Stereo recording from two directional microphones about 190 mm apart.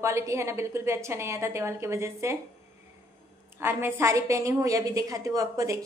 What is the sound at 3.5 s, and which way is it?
A woman's voice, 10° right (ahead or behind).